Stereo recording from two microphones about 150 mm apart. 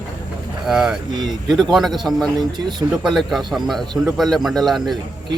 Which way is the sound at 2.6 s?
30° right (ahead or behind).